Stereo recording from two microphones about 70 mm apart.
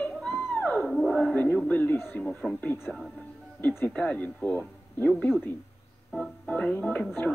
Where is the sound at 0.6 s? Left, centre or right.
Centre.